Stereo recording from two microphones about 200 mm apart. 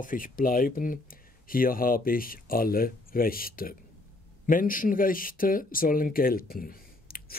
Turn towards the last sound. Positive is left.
turn(degrees=45)  # may be behind; listen again after turning